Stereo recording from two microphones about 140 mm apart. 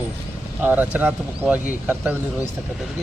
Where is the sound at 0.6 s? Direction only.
10° right (ahead or behind).